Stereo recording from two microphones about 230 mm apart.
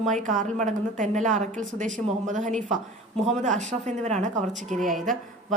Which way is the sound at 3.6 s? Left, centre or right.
Right.